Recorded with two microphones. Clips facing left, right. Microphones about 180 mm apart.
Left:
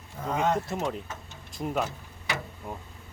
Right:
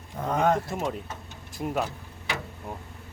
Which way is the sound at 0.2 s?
60° right (ahead or behind).